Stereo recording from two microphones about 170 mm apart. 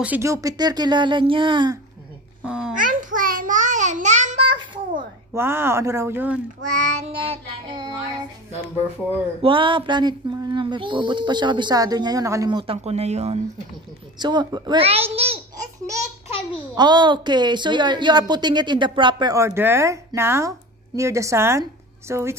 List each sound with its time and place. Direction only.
0.0 s a woman's voice: 15° right (ahead or behind)
2.4 s babbling: 5° right (ahead or behind)
2.8 s a sound: 50° right (ahead or behind)
4.5 s a sound: 30° right (ahead or behind)
5.3 s speech: 15° right (ahead or behind)
6.6 s child singing: 45° right (ahead or behind); by 7.9 s 25° right (ahead or behind)
9.4 s a woman's voice: 30° right (ahead or behind)
14.1 s child singing: 25° right (ahead or behind)
16.7 s a woman's voice: 25° right (ahead or behind)